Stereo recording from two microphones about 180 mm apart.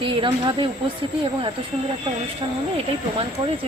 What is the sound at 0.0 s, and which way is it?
Speech, 30° right (ahead or behind).